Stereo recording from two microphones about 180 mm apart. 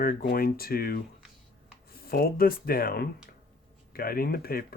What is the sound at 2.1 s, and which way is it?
Speech, 55° left (ahead or behind).